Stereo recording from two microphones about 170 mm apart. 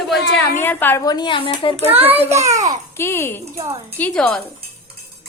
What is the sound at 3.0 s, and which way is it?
Speech, 15° left (ahead or behind).